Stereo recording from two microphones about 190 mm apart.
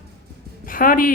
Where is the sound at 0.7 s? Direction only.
45° left (ahead or behind).